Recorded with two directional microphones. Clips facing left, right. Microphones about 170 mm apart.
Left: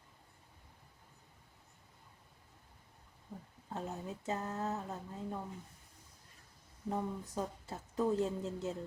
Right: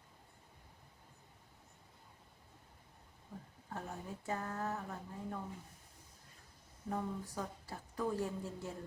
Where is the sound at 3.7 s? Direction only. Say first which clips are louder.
Left 4 dB; 20° left (ahead or behind).